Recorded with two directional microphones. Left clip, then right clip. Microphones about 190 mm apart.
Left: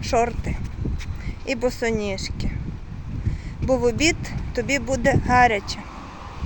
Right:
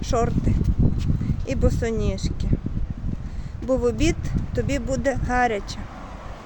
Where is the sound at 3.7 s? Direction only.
5° right (ahead or behind).